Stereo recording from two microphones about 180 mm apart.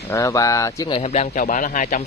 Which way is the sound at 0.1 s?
20° left (ahead or behind).